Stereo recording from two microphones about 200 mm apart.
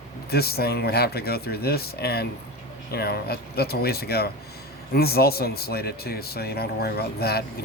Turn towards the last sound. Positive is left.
turn(degrees=50)  # may be behind; listen again after turning